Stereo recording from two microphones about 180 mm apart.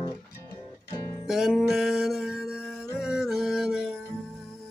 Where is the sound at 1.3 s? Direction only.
Centre (ahead or behind).